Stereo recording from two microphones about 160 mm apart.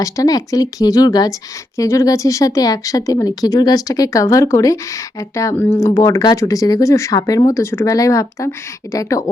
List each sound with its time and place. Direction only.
0.0 s speech: 20° left (ahead or behind)